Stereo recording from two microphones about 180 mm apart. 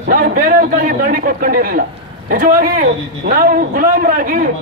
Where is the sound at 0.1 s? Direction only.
50° right (ahead or behind).